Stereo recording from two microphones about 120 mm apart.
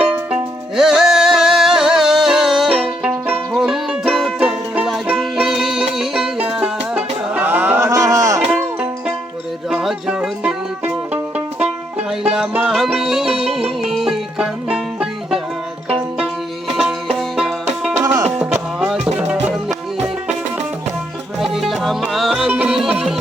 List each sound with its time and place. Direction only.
0.0 s music: 10° right (ahead or behind)
7.3 s a sound: 15° right (ahead or behind)
7.8 s a sound: 30° right (ahead or behind)
8.5 s music: 10° right (ahead or behind)
12.6 s music: centre (ahead or behind)
17.9 s music: 35° right (ahead or behind)
18.2 s music: 10° right (ahead or behind)
21.5 s music: centre (ahead or behind)